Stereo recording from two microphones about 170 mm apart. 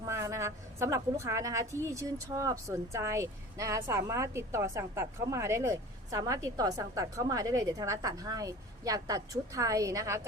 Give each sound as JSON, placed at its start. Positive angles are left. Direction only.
{"t": 0.0, "sound": "a woman's voice", "side_deg": -15}